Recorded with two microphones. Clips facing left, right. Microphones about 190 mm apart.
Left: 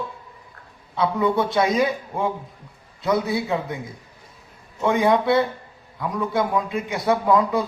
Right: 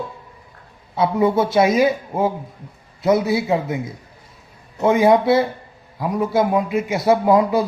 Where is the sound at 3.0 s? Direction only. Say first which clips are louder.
Right 5 dB; 20° right (ahead or behind).